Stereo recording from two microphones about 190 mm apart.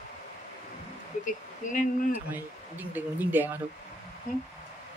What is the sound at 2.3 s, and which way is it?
Speech, 10° right (ahead or behind).